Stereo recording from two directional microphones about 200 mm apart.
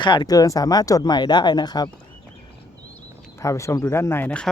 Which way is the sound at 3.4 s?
15° left (ahead or behind).